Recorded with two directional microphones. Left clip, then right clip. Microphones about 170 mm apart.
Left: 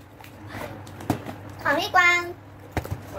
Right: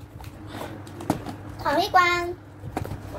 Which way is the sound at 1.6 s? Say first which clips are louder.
Even; 5° left (ahead or behind).